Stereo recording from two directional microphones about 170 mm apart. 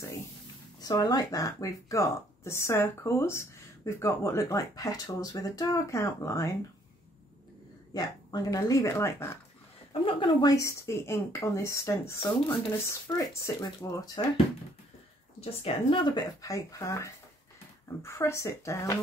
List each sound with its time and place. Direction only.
0.7 s speech: 25° left (ahead or behind)
7.9 s speech: 25° left (ahead or behind)
10.0 s a woman's voice: 25° left (ahead or behind)
15.6 s a woman's voice: 30° left (ahead or behind); by 18.9 s 15° left (ahead or behind)